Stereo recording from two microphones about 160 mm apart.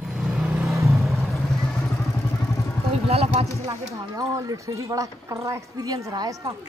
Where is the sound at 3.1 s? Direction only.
40° right (ahead or behind).